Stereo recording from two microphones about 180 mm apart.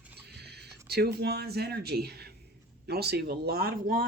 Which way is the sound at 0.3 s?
65° right (ahead or behind).